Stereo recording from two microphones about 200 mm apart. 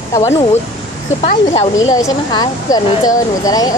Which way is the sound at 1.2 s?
30° left (ahead or behind).